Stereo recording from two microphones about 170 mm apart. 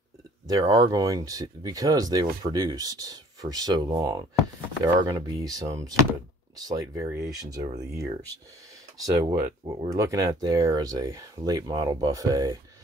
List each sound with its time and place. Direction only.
0.5 s speech: 20° right (ahead or behind)
8.9 s speech: 20° right (ahead or behind)